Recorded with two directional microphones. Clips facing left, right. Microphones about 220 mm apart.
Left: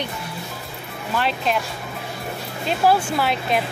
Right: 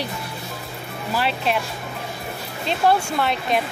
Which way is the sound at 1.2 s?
Centre (ahead or behind).